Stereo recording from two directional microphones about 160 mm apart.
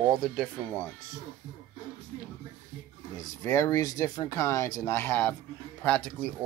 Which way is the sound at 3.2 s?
20° left (ahead or behind).